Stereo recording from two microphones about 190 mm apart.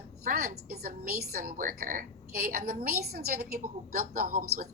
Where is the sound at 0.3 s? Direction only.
45° right (ahead or behind).